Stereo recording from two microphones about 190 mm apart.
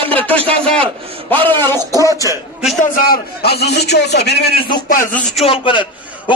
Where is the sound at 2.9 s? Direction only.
55° left (ahead or behind).